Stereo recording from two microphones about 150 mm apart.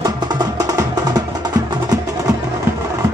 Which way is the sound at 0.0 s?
30° right (ahead or behind).